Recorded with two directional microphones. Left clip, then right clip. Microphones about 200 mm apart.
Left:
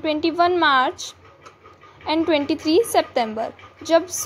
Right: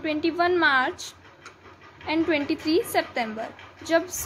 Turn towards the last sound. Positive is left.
turn(degrees=25)  # may be behind; listen again after turning